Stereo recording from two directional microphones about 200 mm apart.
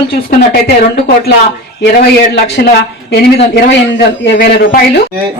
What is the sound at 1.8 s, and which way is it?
Speech, 55° left (ahead or behind).